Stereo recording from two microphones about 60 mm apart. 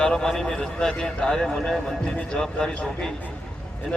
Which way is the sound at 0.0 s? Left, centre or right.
Centre.